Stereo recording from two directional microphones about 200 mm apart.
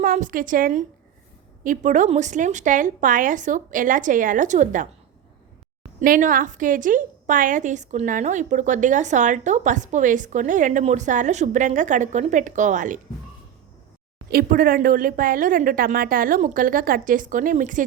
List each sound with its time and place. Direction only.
0.0 s a woman's voice: 40° right (ahead or behind)
6.0 s a woman's voice: 40° right (ahead or behind)
14.3 s speech: 50° right (ahead or behind)